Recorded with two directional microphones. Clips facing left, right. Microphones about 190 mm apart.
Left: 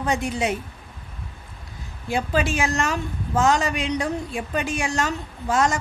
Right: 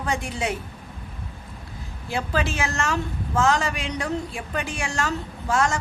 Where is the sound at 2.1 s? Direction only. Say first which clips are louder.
Left 3 dB; 20° left (ahead or behind).